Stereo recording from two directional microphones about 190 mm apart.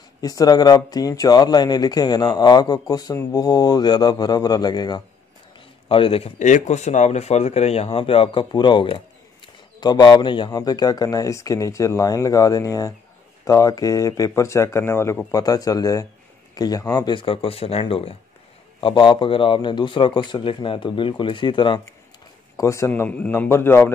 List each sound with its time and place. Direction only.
0.2 s speech: 20° left (ahead or behind)